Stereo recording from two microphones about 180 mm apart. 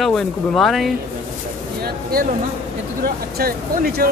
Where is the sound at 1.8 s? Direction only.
55° right (ahead or behind).